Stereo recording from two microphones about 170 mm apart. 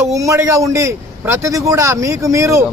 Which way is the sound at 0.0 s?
20° right (ahead or behind).